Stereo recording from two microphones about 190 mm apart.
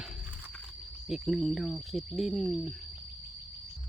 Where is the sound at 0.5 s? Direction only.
Centre (ahead or behind).